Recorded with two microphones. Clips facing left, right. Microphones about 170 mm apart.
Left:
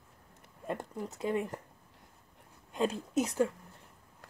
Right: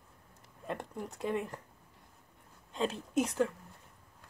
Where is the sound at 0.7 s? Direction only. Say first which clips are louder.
Left 2 dB; 5° left (ahead or behind).